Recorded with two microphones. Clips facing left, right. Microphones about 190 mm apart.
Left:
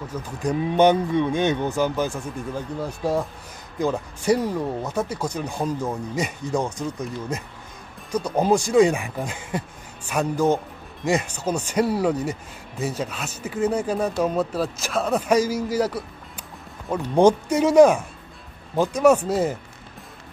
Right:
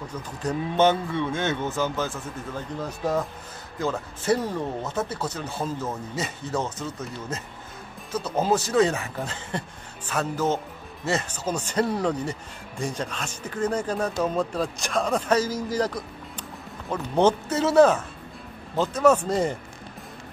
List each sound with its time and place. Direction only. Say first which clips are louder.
0.4 s speech: left 3 dB; 15° left (ahead or behind)